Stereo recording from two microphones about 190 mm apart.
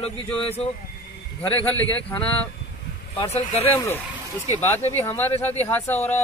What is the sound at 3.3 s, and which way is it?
Speech, 35° left (ahead or behind).